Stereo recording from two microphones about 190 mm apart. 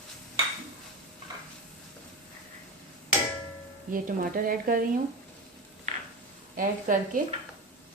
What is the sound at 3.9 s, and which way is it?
Speech, 45° right (ahead or behind).